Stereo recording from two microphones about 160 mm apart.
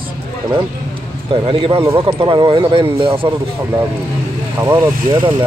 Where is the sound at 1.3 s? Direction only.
35° right (ahead or behind).